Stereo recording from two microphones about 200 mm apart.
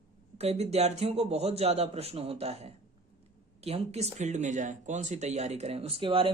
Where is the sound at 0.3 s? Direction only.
30° right (ahead or behind).